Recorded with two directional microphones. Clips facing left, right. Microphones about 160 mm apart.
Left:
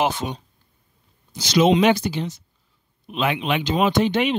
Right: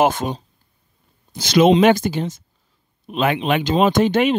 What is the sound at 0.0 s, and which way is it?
Speech, 50° right (ahead or behind).